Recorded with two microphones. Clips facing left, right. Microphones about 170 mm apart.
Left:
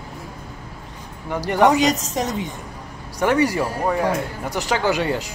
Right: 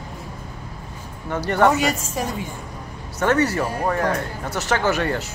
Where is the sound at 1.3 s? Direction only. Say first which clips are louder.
Left 1 dB; 15° left (ahead or behind).